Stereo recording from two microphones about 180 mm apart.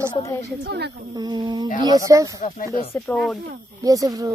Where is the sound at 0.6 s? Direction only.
65° right (ahead or behind).